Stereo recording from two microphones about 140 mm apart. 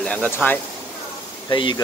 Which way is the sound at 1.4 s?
30° left (ahead or behind).